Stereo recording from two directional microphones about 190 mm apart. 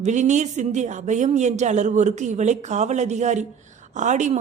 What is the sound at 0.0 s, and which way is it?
A man's voice, 40° right (ahead or behind).